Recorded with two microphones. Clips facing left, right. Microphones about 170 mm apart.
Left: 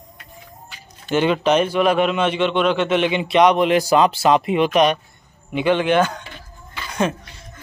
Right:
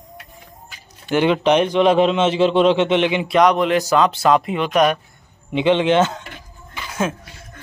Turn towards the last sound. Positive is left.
turn(degrees=-5)  # may be behind; listen again after turning